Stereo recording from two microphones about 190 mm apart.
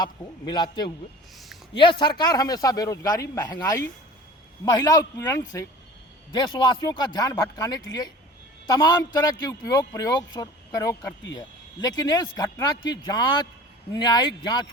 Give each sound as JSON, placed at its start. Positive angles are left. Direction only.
{"t": 0.0, "sound": "a man's voice", "side_deg": 25}